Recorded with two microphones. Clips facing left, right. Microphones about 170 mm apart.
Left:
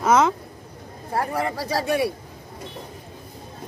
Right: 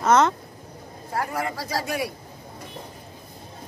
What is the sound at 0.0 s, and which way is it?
Speech, 5° left (ahead or behind).